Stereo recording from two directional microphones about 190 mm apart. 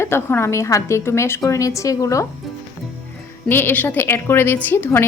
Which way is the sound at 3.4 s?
10° left (ahead or behind).